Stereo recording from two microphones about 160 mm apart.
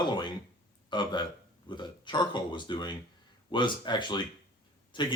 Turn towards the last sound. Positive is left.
turn(degrees=30)  # may be behind; listen again after turning